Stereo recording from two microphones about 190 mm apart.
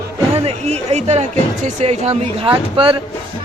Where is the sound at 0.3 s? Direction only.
35° right (ahead or behind).